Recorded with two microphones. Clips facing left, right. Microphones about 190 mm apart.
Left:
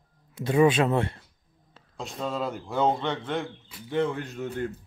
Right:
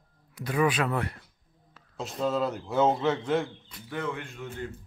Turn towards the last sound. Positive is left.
turn(degrees=40)  # may be behind; listen again after turning